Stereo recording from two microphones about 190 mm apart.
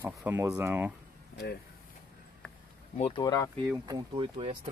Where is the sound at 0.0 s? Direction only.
10° right (ahead or behind).